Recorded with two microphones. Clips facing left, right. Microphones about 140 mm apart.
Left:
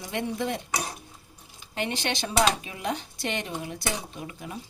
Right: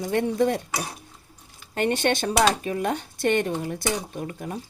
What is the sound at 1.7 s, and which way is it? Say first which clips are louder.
Speech: right 7 dB; 50° right (ahead or behind).